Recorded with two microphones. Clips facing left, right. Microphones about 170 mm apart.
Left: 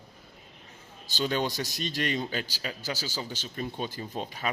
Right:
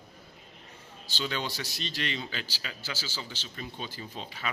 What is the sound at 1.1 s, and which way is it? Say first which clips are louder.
Speech: left 5 dB; 45° left (ahead or behind).